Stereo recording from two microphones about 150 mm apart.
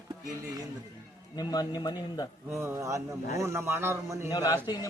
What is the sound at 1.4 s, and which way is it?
Speech, 25° left (ahead or behind).